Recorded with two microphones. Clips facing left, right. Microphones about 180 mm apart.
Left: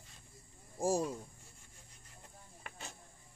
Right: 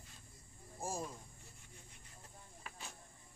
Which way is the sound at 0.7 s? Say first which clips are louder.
Left 10 dB; 85° left.